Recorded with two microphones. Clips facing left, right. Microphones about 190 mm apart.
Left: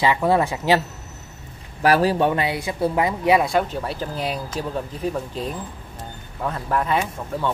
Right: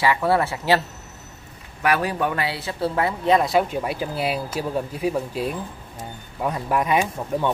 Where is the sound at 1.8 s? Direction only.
35° left (ahead or behind).